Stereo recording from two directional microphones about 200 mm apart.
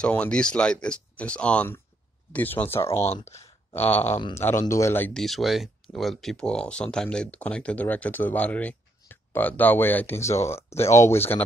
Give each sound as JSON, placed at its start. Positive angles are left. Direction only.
{"t": 0.0, "sound": "speech", "side_deg": 5}
{"t": 3.1, "sound": "speech", "side_deg": 30}
{"t": 3.4, "sound": "a sound", "side_deg": 10}
{"t": 3.9, "sound": "speech", "side_deg": 30}
{"t": 4.3, "sound": "speech", "side_deg": 10}